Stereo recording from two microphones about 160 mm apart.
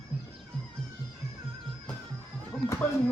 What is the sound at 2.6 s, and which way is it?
Music, 15° left (ahead or behind).